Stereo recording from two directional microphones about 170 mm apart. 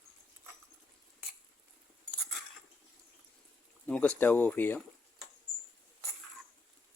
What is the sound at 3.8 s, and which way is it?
Speech, 5° left (ahead or behind).